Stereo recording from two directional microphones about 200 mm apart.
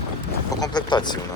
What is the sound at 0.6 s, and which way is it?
Speech, 20° left (ahead or behind).